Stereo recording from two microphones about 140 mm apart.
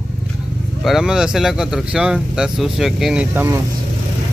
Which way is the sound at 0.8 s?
5° right (ahead or behind).